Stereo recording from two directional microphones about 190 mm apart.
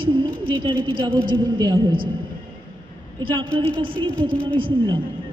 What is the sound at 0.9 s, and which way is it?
A woman's voice, 25° right (ahead or behind).